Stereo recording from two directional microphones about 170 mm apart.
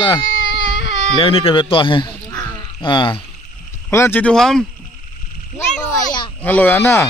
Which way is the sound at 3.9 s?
10° left (ahead or behind).